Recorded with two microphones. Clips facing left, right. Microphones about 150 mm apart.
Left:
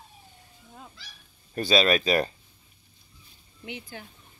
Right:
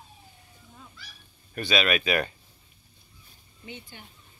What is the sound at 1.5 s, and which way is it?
Speech, 35° left (ahead or behind).